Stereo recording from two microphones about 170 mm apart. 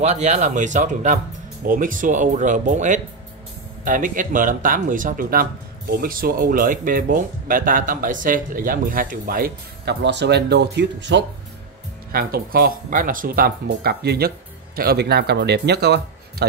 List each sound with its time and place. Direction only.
0.0 s speech: 40° right (ahead or behind); by 11.2 s 90° right
12.1 s speech: 60° right (ahead or behind)